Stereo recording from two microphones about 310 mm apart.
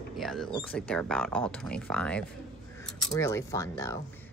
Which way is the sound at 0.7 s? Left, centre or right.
Centre.